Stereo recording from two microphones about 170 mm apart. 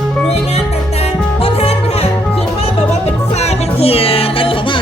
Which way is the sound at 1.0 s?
35° left (ahead or behind).